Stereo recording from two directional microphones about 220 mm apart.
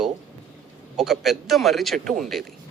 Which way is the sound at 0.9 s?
Centre (ahead or behind).